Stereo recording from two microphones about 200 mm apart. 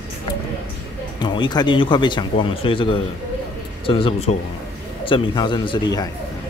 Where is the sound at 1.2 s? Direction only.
20° left (ahead or behind).